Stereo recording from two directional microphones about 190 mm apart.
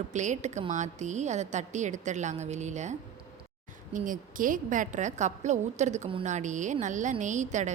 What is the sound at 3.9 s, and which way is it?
A woman's voice, 45° right (ahead or behind).